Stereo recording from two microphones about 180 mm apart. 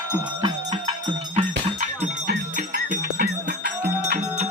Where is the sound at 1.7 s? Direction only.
45° right (ahead or behind).